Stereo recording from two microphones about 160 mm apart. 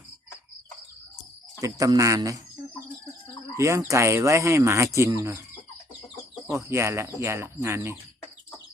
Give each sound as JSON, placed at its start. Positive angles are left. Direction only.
{"t": 1.6, "sound": "speech", "side_deg": -20}
{"t": 3.6, "sound": "speech", "side_deg": -20}
{"t": 6.5, "sound": "speech", "side_deg": -15}